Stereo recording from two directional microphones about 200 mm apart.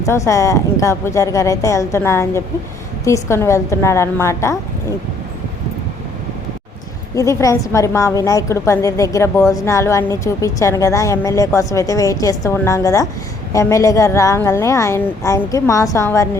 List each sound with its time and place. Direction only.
0.0 s a woman's voice: 15° left (ahead or behind)
7.2 s a woman's voice: 15° left (ahead or behind)